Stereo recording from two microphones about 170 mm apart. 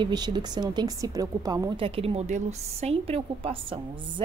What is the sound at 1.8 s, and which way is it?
A woman's voice, 35° right (ahead or behind).